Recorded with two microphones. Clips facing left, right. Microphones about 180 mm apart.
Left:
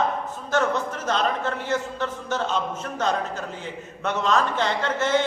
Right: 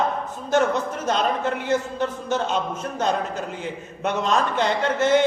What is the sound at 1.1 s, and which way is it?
A man's voice, 15° right (ahead or behind).